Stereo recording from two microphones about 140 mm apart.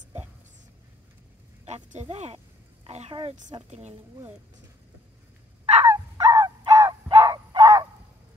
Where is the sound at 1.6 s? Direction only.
55° right (ahead or behind).